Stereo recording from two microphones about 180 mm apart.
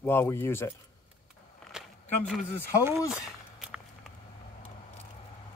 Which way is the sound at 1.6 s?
5° left (ahead or behind).